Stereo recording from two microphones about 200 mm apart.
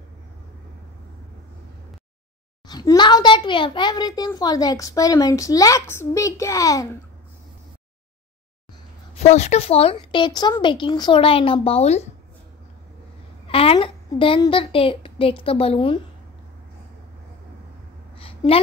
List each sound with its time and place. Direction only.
2.7 s a child's voice: 20° left (ahead or behind)
9.2 s a woman's voice: 35° left (ahead or behind)
13.5 s a woman's voice: 30° left (ahead or behind)
18.1 s a sound: 30° left (ahead or behind)